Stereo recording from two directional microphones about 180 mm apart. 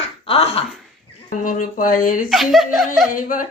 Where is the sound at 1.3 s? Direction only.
50° left (ahead or behind).